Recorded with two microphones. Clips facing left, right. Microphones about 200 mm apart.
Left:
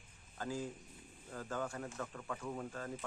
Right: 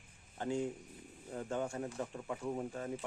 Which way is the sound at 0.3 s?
25° right (ahead or behind).